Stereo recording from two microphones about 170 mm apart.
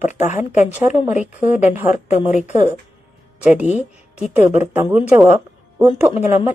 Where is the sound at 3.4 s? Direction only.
10° right (ahead or behind).